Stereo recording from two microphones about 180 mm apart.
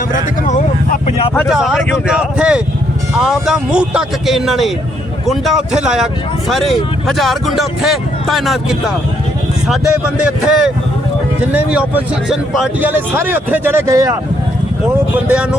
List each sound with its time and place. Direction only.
0.1 s speech: 45° left (ahead or behind)
1.3 s speech: 10° left (ahead or behind)
9.6 s speech: 5° right (ahead or behind)
11.5 s a man's voice: 5° right (ahead or behind)